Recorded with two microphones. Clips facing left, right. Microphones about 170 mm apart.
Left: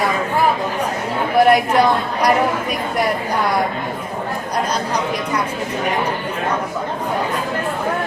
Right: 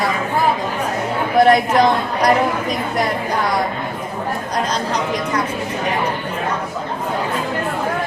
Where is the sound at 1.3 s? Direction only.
10° left (ahead or behind).